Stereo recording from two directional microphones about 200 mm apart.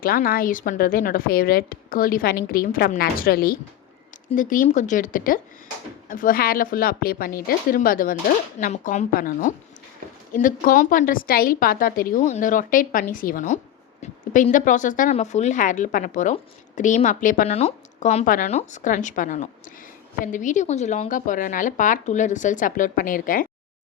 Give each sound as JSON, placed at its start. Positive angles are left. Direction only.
{"t": 0.0, "sound": "a woman's voice", "side_deg": 45}